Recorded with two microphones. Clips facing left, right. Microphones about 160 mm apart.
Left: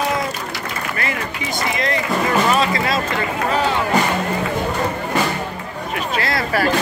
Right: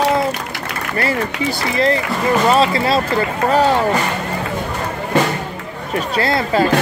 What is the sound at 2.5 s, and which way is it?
Speech, 30° right (ahead or behind).